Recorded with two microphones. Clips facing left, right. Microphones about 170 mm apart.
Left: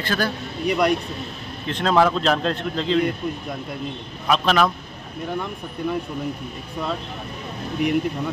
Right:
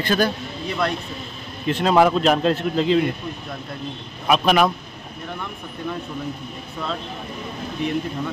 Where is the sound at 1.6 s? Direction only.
10° right (ahead or behind).